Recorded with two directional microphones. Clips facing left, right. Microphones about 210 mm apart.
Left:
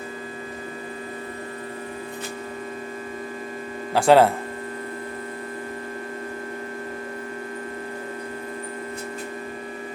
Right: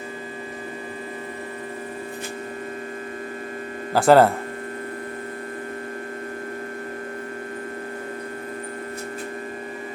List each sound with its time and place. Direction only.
3.9 s speech: centre (ahead or behind)